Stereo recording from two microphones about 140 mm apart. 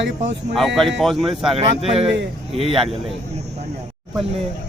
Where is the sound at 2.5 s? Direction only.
45° right (ahead or behind).